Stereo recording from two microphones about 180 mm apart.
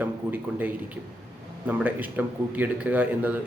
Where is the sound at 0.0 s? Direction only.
10° right (ahead or behind).